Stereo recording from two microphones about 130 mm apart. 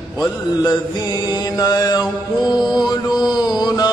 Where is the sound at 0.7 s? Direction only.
30° left (ahead or behind).